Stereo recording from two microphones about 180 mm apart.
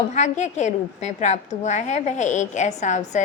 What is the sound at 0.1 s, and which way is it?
A woman's voice, 40° left (ahead or behind).